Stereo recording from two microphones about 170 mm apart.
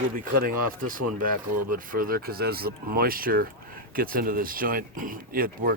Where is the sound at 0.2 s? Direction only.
55° right (ahead or behind).